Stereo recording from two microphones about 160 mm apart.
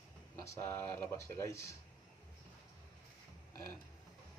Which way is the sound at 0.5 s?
15° left (ahead or behind).